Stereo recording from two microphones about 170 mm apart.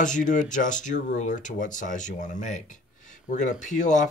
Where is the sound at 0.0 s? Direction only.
50° left (ahead or behind).